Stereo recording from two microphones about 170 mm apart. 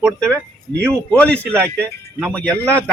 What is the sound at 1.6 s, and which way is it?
Speech, 10° right (ahead or behind).